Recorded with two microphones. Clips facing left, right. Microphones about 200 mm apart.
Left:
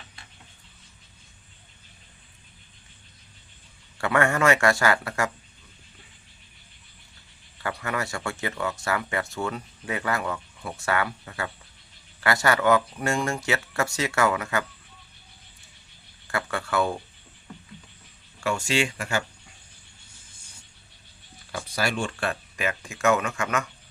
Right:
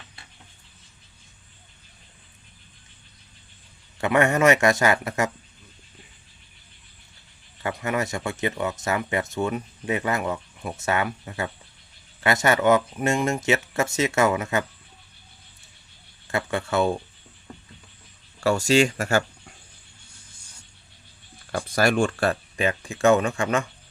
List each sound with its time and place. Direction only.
3.9 s speech: 20° right (ahead or behind)
7.6 s speech: 20° right (ahead or behind)
16.2 s speech: 20° right (ahead or behind)
18.3 s speech: 40° right (ahead or behind)
21.5 s speech: 50° right (ahead or behind); by 23.6 s 30° right (ahead or behind)